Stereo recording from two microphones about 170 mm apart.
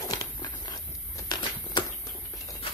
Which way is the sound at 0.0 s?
25° left (ahead or behind).